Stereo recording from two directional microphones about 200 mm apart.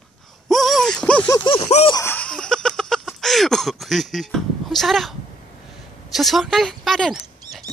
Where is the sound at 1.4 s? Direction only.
30° left (ahead or behind).